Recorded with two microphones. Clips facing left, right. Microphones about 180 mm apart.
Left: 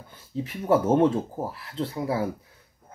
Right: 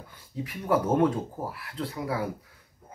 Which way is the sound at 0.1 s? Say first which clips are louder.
Left 4 dB; 25° left (ahead or behind).